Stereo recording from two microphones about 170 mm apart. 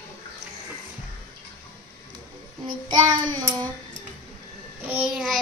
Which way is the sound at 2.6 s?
25° right (ahead or behind).